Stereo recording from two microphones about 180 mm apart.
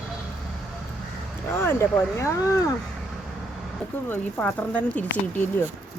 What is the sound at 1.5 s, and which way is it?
Speech, 15° left (ahead or behind).